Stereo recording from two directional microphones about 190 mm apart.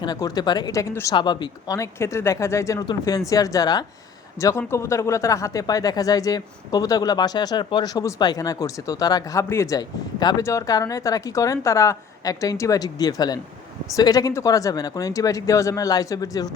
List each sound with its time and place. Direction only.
0.0 s speech: 20° left (ahead or behind)